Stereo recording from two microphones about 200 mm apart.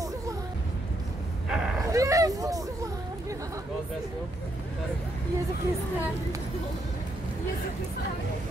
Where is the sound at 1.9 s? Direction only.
15° right (ahead or behind).